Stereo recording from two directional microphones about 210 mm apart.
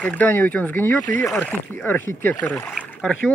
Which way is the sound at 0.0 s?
5° left (ahead or behind).